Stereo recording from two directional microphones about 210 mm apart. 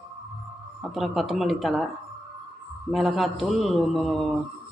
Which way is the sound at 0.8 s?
Centre (ahead or behind).